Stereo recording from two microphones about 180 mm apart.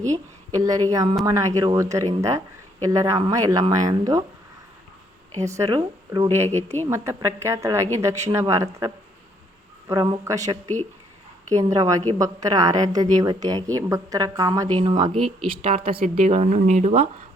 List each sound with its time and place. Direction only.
0.0 s a woman's voice: 20° right (ahead or behind)
5.5 s a woman's voice: 15° right (ahead or behind)
9.9 s a woman's voice: 20° right (ahead or behind); by 17.1 s 35° right (ahead or behind)